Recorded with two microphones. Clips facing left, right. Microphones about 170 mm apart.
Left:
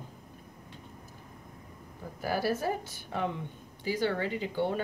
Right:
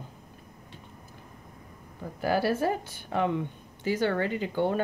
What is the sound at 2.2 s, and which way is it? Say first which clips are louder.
Speech: right 4 dB; 70° right (ahead or behind).